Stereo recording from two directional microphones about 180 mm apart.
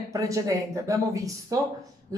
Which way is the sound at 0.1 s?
20° right (ahead or behind).